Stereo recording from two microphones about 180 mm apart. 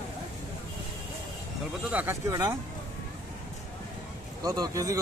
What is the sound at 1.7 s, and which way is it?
Speech, 10° right (ahead or behind).